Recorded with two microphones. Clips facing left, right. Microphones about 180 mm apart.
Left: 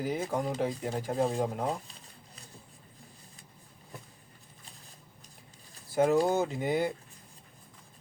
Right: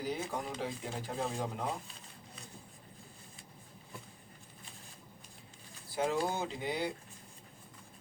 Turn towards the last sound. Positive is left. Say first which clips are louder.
# left 7 dB
turn(degrees=50)  # may be behind; listen again after turning